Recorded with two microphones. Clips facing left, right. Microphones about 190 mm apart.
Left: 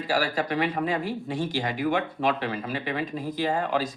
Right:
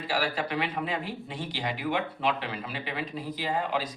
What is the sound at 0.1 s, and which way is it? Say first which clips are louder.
Speech: left 4 dB; 45° left (ahead or behind).